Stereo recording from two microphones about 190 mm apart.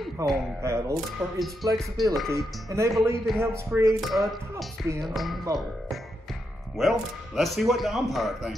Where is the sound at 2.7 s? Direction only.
15° right (ahead or behind).